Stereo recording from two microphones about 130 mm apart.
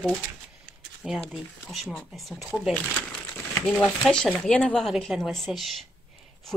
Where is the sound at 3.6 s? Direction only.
10° left (ahead or behind).